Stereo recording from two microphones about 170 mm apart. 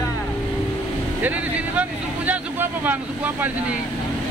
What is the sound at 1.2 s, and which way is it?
Speech, 10° right (ahead or behind).